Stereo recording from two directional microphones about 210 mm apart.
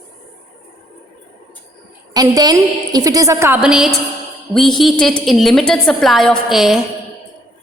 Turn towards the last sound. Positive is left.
turn(degrees=0)  # may be behind; listen again after turning